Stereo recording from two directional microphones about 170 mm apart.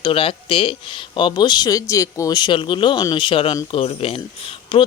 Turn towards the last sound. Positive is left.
turn(degrees=30)  # may be behind; listen again after turning